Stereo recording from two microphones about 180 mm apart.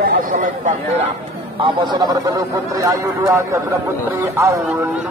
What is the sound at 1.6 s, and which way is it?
Speech, 25° right (ahead or behind).